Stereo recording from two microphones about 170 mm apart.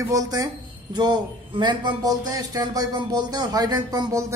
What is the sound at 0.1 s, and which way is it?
Speech, 20° right (ahead or behind).